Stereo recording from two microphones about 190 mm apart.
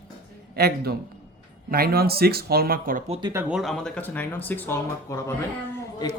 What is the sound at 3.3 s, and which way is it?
Speech, centre (ahead or behind).